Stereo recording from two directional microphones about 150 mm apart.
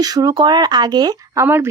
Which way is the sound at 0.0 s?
25° right (ahead or behind).